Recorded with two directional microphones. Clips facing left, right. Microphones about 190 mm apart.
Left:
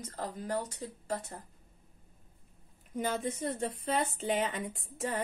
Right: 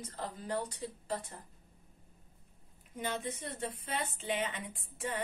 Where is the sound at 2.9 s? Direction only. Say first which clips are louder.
Left 5 dB; 45° left (ahead or behind).